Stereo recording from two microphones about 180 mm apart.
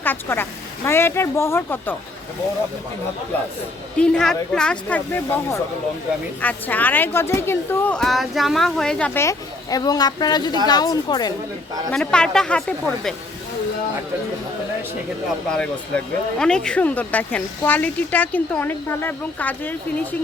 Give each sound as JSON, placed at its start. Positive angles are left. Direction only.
{"t": 0.0, "sound": "speech", "side_deg": 10}
{"t": 3.9, "sound": "a woman's voice", "side_deg": 5}
{"t": 11.9, "sound": "speech", "side_deg": 5}
{"t": 16.4, "sound": "speech", "side_deg": 5}